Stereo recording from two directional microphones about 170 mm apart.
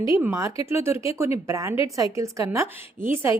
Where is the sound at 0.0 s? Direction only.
15° right (ahead or behind).